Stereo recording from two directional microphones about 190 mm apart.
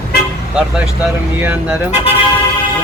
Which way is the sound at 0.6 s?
5° right (ahead or behind).